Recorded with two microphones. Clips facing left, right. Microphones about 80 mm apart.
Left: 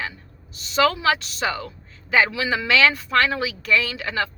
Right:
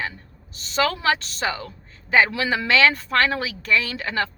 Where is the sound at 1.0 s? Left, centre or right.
Right.